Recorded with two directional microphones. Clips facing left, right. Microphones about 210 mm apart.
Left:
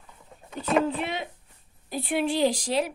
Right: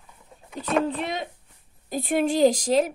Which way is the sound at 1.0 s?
40° right (ahead or behind).